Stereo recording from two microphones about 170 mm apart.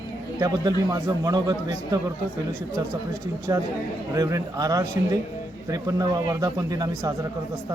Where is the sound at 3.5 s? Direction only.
20° right (ahead or behind).